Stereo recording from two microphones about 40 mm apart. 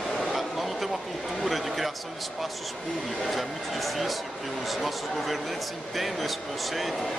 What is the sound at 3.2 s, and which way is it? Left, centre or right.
Speech, centre.